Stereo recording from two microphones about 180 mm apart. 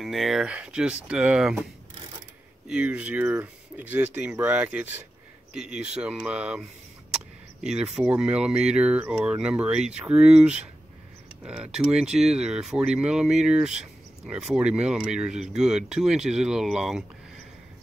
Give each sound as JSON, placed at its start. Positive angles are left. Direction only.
{"t": 0.0, "sound": "speech", "side_deg": 0}
{"t": 2.7, "sound": "speech", "side_deg": -5}
{"t": 7.6, "sound": "speech", "side_deg": -5}